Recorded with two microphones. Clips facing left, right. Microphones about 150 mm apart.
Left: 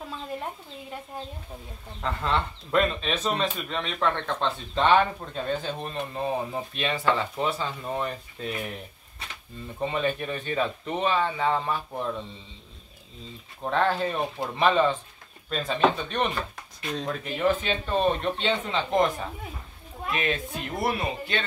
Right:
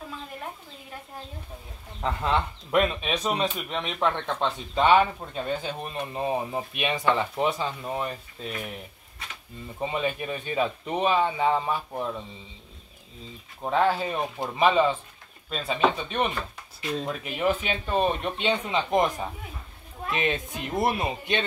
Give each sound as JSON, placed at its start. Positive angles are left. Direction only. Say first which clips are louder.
{"t": 2.0, "sound": "speech", "louder": "right 1 dB", "side_deg": -15}
{"t": 7.8, "sound": "speech", "louder": "left 1 dB", "side_deg": -5}
{"t": 9.8, "sound": "speech", "louder": "left 1 dB", "side_deg": -5}
{"t": 13.6, "sound": "speech", "louder": "right 1 dB", "side_deg": -10}